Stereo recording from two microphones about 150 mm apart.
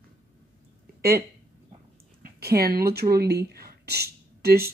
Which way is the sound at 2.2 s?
90° right.